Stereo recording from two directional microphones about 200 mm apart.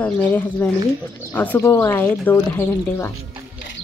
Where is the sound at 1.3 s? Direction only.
10° left (ahead or behind).